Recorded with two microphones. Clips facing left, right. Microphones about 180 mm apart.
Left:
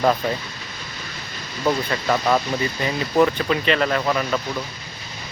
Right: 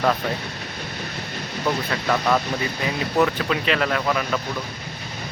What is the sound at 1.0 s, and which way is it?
Vehicle, 60° right (ahead or behind).